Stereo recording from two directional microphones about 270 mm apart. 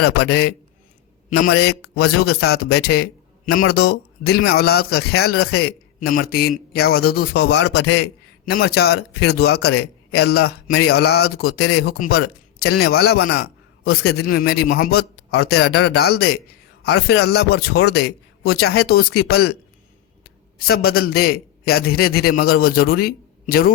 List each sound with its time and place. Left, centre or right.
0.0 s speech: left
1.4 s a man's voice: left
20.6 s speech: left